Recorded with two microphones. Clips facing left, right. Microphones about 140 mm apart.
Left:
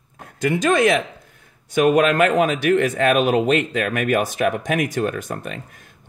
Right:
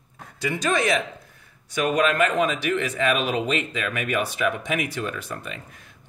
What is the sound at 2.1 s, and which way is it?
Speech, 60° left (ahead or behind).